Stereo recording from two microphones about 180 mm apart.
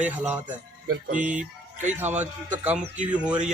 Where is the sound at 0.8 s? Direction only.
45° right (ahead or behind).